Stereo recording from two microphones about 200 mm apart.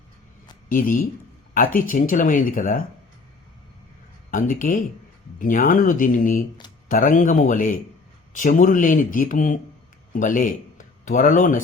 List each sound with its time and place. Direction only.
0.7 s speech: 45° left (ahead or behind)
4.3 s a man's voice: 40° left (ahead or behind)